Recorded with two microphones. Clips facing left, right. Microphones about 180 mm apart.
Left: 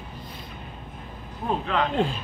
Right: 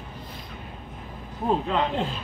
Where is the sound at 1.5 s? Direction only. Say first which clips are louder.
Right 2 dB; 20° right (ahead or behind).